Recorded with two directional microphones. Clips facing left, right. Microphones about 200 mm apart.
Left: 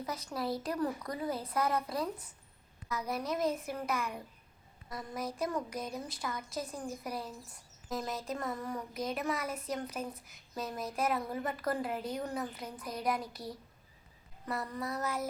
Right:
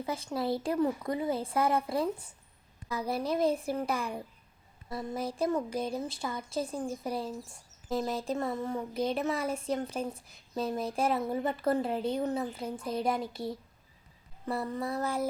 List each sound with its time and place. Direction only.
0.0 s a woman's voice: 25° right (ahead or behind)